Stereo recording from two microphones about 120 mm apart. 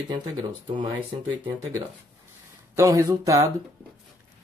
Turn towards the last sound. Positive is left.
turn(degrees=-25)  # may be behind; listen again after turning